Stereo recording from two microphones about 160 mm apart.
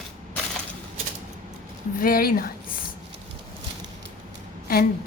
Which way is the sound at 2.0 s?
65° left (ahead or behind).